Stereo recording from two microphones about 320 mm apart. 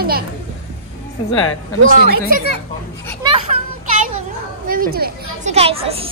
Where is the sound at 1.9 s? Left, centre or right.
Right.